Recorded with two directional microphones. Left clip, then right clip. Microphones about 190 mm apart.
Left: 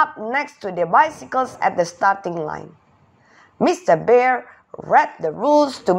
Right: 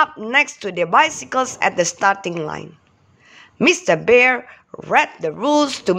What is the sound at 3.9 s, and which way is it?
A woman's voice, 40° right (ahead or behind).